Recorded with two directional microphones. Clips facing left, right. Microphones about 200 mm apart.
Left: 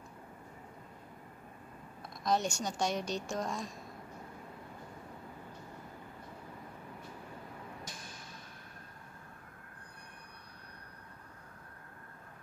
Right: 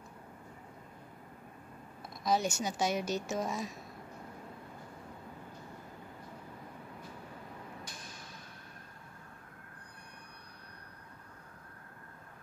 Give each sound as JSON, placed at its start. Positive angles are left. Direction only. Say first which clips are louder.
{"t": 2.2, "sound": "a woman's voice", "louder": "right 1 dB", "side_deg": -5}